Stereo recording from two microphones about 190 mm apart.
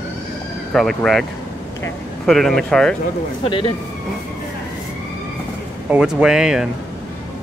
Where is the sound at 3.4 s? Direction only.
25° left (ahead or behind).